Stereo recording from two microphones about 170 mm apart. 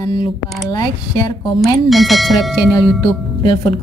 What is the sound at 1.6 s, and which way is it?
Speech, centre (ahead or behind).